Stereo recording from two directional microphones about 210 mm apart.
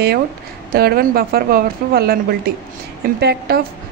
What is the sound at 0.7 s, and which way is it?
A woman's voice, 45° right (ahead or behind).